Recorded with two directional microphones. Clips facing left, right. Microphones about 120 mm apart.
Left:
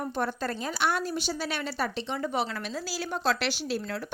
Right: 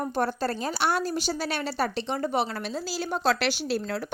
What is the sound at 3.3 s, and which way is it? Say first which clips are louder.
Speech: right 3 dB; 70° right (ahead or behind).